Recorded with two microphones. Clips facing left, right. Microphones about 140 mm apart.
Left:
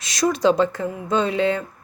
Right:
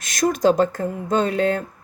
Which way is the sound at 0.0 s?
50° right (ahead or behind).